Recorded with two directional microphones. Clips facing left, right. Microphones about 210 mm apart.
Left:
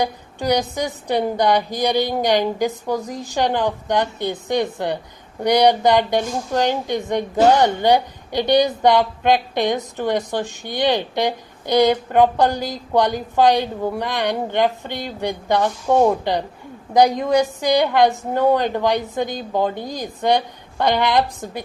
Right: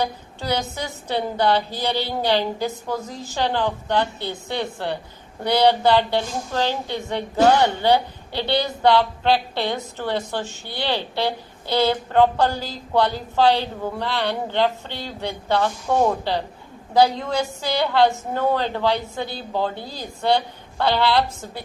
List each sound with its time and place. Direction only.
0.0 s a woman's voice: 15° left (ahead or behind)